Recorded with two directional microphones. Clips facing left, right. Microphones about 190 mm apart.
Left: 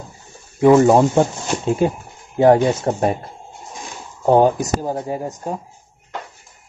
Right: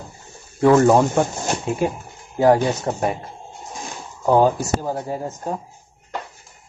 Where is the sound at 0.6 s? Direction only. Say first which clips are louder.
Left 2 dB; 15° left (ahead or behind).